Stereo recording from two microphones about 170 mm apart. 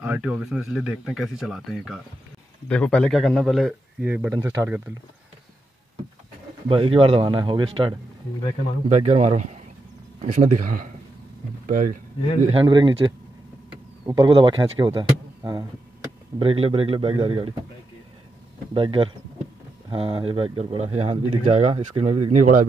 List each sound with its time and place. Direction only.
0.0 s speech: 10° right (ahead or behind)
4.3 s speech: 20° right (ahead or behind)
6.7 s speech: 30° right (ahead or behind)
8.8 s speech: 40° right (ahead or behind)
12.5 s speech: 25° right (ahead or behind)
18.7 s speech: 30° right (ahead or behind); by 22.7 s 50° right (ahead or behind)